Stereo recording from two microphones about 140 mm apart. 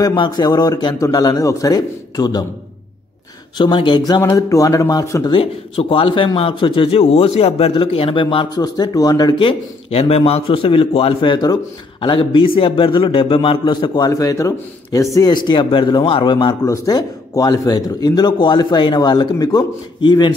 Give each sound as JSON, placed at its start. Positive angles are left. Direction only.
{"t": 0.0, "sound": "speech", "side_deg": 30}
{"t": 3.5, "sound": "speech", "side_deg": 35}
{"t": 5.3, "sound": "a man's voice", "side_deg": 40}